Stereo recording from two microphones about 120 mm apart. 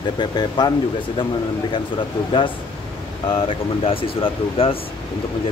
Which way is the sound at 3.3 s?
50° left (ahead or behind).